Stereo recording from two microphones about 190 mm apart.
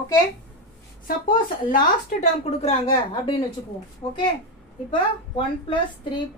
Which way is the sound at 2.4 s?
30° left (ahead or behind).